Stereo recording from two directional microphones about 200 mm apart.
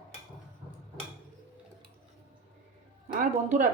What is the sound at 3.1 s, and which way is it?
Music, 40° right (ahead or behind).